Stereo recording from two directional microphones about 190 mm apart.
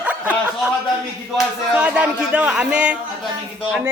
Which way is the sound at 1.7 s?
5° right (ahead or behind).